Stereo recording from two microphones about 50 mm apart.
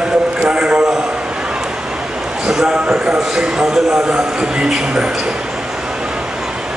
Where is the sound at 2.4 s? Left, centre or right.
Centre.